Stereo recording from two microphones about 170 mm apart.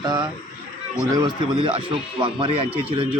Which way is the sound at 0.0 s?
25° right (ahead or behind).